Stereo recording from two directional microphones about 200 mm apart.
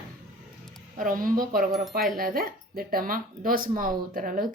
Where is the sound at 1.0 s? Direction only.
45° right (ahead or behind).